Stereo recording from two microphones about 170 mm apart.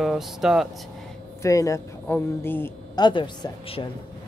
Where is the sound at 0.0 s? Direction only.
Centre (ahead or behind).